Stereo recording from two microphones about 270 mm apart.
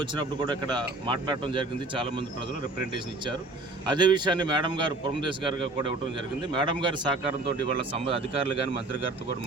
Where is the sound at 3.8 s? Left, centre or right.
Centre.